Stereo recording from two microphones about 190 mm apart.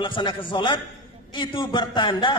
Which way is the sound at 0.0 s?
25° left (ahead or behind).